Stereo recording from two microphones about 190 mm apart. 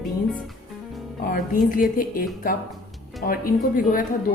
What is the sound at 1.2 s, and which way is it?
A woman's voice, 45° left (ahead or behind).